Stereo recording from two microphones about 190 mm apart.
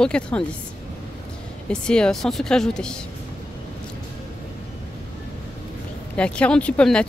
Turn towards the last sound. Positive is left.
turn(degrees=5)  # may be behind; listen again after turning